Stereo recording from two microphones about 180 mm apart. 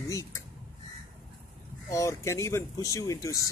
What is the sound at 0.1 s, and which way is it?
Speech, 15° left (ahead or behind).